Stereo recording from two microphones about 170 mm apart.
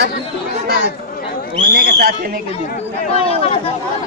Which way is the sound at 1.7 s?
65° right (ahead or behind).